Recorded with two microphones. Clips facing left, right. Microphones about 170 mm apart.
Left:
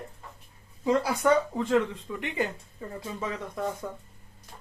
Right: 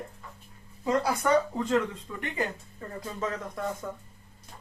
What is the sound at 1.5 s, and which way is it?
Speech, 15° left (ahead or behind).